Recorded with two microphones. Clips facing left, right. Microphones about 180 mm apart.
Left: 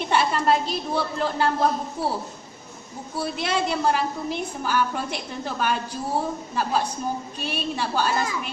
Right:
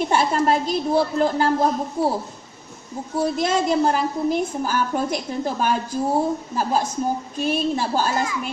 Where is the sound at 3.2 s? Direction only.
45° right (ahead or behind).